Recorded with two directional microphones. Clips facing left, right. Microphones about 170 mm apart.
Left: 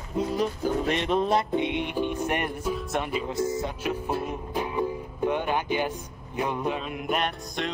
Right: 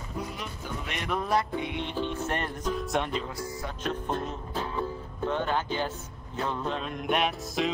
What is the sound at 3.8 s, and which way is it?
Music, 10° left (ahead or behind).